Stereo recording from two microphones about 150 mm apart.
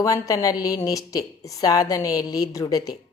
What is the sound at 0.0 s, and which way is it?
A woman's voice, 25° left (ahead or behind).